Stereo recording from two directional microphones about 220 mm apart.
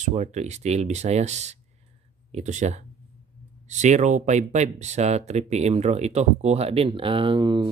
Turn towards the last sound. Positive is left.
turn(degrees=-20)  # may be behind; listen again after turning